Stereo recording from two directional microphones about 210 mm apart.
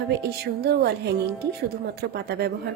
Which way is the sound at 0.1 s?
50° right (ahead or behind).